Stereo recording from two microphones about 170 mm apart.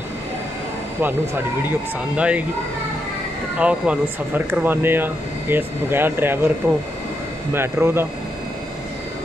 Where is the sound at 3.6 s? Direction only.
5° right (ahead or behind).